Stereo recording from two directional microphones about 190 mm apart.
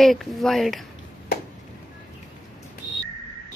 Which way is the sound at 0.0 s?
Centre (ahead or behind).